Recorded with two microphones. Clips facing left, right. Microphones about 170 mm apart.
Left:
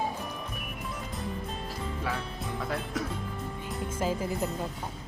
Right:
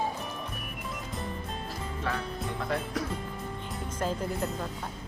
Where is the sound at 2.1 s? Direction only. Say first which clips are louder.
Right 5 dB; 10° left (ahead or behind).